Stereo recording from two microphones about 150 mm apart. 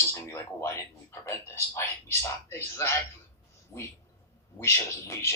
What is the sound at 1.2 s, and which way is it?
Speech, 15° left (ahead or behind).